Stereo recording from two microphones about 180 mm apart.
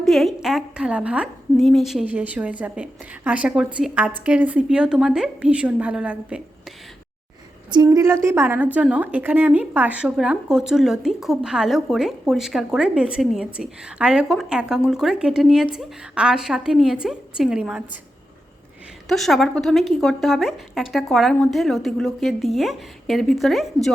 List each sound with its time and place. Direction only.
0.0 s a woman's voice: centre (ahead or behind)
7.7 s a woman's voice: 20° right (ahead or behind); by 17.8 s 5° right (ahead or behind)
19.0 s a woman's voice: centre (ahead or behind)